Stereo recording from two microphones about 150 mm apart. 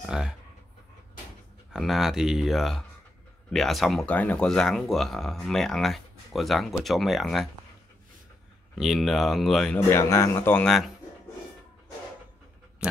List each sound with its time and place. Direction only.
0.0 s speech: 5° right (ahead or behind)
1.7 s speech: centre (ahead or behind)
8.7 s speech: centre (ahead or behind)
9.8 s speech: 20° left (ahead or behind)